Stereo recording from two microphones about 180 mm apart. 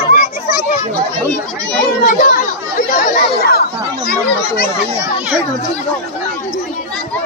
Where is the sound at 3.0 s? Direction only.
60° left (ahead or behind).